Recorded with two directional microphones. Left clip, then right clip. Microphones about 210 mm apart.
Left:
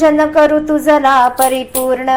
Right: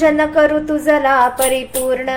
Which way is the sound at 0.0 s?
15° left (ahead or behind).